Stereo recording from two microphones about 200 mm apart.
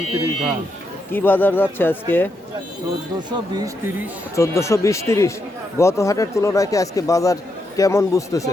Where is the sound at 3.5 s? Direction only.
15° right (ahead or behind).